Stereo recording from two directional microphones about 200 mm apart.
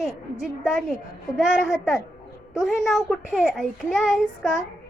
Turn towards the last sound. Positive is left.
turn(degrees=0)  # may be behind; listen again after turning